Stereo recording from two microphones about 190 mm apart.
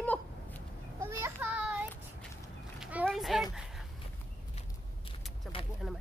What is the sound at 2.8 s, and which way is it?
Speech, 5° right (ahead or behind).